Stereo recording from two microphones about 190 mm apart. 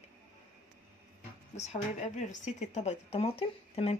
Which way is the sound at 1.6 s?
35° left (ahead or behind).